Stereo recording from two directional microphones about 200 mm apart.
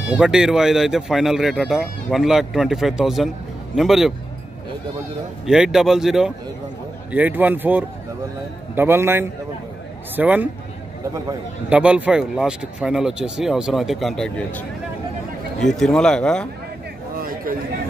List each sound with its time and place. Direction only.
0.1 s speech: 5° right (ahead or behind)
5.5 s speech: 5° right (ahead or behind)
15.6 s speech: centre (ahead or behind)
17.2 s a sound: 45° right (ahead or behind)